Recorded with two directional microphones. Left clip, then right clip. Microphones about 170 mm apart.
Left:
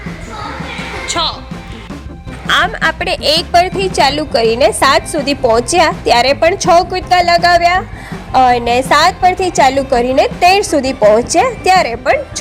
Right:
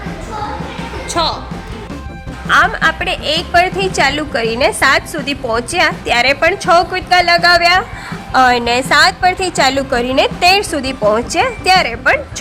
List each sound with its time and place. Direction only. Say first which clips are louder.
1.0 s music: right 1 dB; 10° right (ahead or behind)
2.5 s a woman's voice: right 1 dB; 25° left (ahead or behind); by 12.2 s 10° left (ahead or behind)